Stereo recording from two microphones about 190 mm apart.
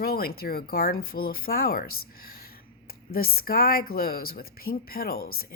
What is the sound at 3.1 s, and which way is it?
A woman's voice, 50° left (ahead or behind).